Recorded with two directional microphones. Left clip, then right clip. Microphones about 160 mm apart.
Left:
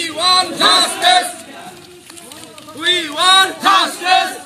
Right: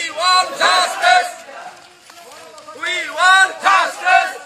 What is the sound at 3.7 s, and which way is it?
Battle cry, 20° right (ahead or behind).